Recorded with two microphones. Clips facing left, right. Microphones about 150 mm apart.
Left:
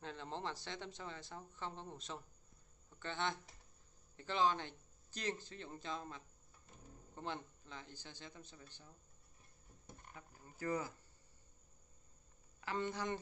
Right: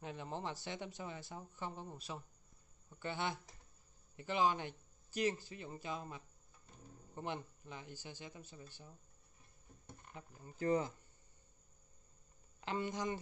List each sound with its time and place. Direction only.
0.0 s speech: 15° right (ahead or behind)
10.1 s speech: 20° right (ahead or behind)
12.7 s speech: 10° right (ahead or behind)